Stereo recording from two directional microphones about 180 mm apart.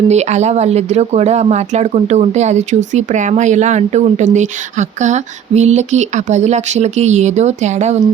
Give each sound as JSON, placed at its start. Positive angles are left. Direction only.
{"t": 0.1, "sound": "speech", "side_deg": -40}